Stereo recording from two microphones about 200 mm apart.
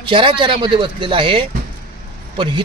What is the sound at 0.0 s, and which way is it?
Speech, 25° right (ahead or behind).